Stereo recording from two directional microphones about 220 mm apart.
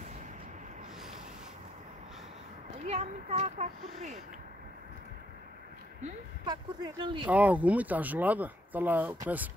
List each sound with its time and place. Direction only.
2.9 s speech: 30° right (ahead or behind)
6.4 s speech: 20° right (ahead or behind)
7.2 s speech: 5° right (ahead or behind)